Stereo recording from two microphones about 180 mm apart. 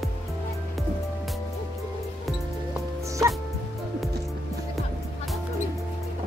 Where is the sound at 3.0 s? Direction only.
15° right (ahead or behind).